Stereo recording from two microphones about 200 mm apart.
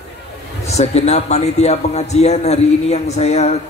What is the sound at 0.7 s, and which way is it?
A man's voice, 35° left (ahead or behind).